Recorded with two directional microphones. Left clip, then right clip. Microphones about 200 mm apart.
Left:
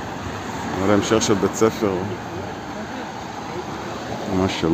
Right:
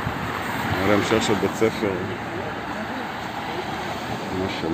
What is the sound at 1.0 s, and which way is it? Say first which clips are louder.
Speech: left 2 dB; 25° left (ahead or behind).